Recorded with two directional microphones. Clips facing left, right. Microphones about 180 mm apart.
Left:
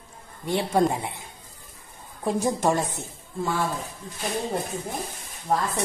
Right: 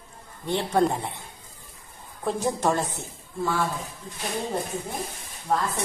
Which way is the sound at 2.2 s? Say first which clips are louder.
Left 1 dB; 15° left (ahead or behind).